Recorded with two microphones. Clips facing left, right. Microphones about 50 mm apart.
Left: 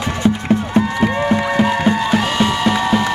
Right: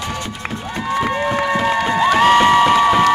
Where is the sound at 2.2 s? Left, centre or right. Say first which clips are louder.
Right 6 dB; right.